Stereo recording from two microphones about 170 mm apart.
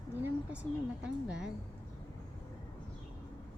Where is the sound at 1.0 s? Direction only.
5° right (ahead or behind).